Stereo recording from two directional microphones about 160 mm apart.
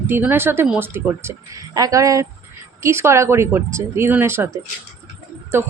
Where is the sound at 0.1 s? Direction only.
10° right (ahead or behind).